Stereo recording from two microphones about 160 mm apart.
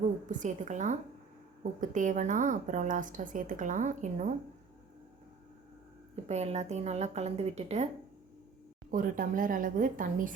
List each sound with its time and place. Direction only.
0.3 s a woman's voice: 50° right (ahead or behind)
6.2 s a woman's voice: 45° right (ahead or behind)
8.9 s speech: 60° right (ahead or behind)